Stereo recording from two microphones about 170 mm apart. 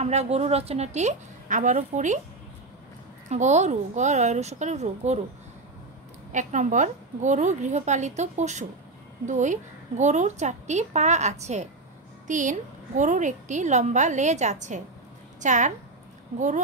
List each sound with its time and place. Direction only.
0.0 s a woman's voice: 40° right (ahead or behind)
3.3 s a woman's voice: 45° right (ahead or behind)
6.3 s a woman's voice: 45° right (ahead or behind)